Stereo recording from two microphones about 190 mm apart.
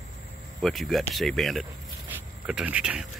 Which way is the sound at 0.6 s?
Centre (ahead or behind).